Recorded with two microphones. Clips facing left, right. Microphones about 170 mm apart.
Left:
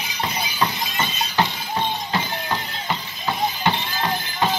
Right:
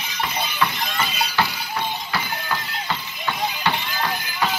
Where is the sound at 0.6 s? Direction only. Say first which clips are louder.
Left 1 dB; 25° left (ahead or behind).